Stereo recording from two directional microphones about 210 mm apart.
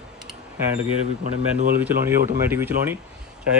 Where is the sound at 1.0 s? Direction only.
35° right (ahead or behind).